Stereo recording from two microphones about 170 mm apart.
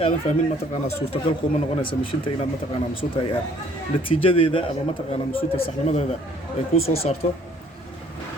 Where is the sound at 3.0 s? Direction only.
45° left (ahead or behind).